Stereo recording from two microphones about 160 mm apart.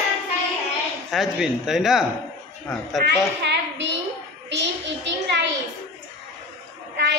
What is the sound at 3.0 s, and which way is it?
Speech, 90° right.